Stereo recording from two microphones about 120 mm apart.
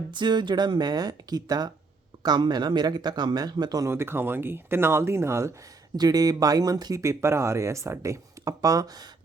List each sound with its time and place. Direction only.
0.1 s speech: 40° right (ahead or behind)